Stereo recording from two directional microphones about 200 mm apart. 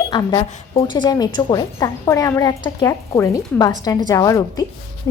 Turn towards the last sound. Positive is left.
turn(degrees=20)  # may be behind; listen again after turning